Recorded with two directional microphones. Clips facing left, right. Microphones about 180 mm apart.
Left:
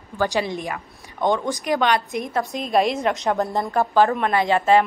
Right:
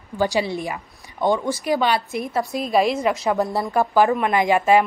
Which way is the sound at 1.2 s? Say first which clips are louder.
Right 1 dB; 15° left (ahead or behind).